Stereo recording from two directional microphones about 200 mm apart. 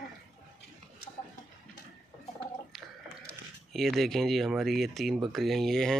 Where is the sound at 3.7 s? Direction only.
Centre (ahead or behind).